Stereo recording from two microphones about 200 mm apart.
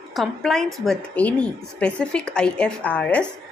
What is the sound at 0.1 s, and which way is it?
A woman's voice, centre (ahead or behind).